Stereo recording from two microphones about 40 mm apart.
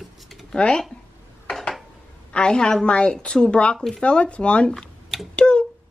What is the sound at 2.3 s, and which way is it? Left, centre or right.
A woman's voice, left.